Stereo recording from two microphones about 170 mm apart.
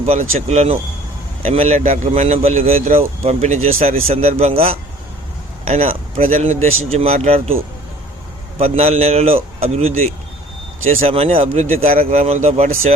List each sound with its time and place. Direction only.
0.0 s speech: 40° right (ahead or behind)
8.5 s speech: 35° right (ahead or behind)
11.0 s speech: 35° right (ahead or behind)